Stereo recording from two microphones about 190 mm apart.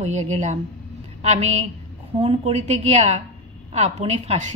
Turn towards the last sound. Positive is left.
turn(degrees=-35)  # may be behind; listen again after turning